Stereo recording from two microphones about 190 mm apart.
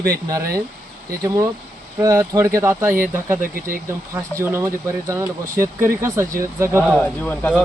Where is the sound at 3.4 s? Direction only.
50° right (ahead or behind).